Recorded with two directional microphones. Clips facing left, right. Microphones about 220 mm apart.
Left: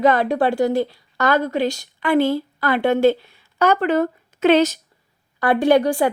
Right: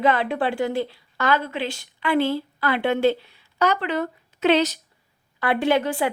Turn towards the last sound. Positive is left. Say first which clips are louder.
# left 5 dB
turn(degrees=45)  # may be behind; listen again after turning